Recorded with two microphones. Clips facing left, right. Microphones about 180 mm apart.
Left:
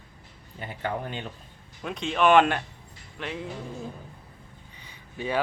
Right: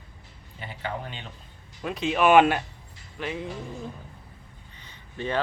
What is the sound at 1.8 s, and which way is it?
Speech, 5° right (ahead or behind).